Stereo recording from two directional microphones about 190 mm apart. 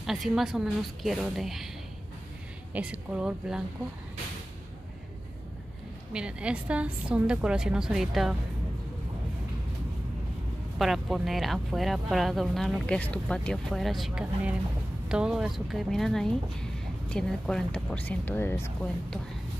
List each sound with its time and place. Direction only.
0.0 s speech: centre (ahead or behind)
2.7 s a woman's voice: 5° right (ahead or behind)
6.1 s speech: 5° right (ahead or behind)
10.8 s speech: centre (ahead or behind)